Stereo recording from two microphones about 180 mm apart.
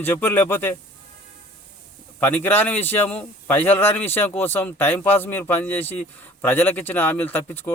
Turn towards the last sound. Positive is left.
turn(degrees=10)  # may be behind; listen again after turning